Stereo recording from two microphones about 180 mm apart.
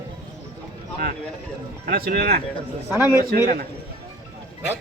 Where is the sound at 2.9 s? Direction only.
10° right (ahead or behind).